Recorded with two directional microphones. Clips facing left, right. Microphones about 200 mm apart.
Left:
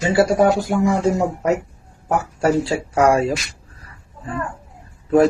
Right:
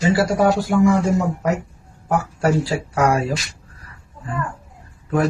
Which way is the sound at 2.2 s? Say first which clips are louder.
Left 3 dB; 25° left (ahead or behind).